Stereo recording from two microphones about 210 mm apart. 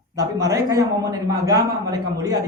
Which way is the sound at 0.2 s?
15° right (ahead or behind).